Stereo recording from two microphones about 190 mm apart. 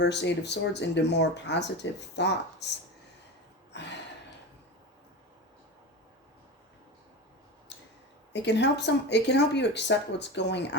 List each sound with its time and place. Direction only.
0.0 s speech: 65° left (ahead or behind)
8.3 s speech: 65° left (ahead or behind)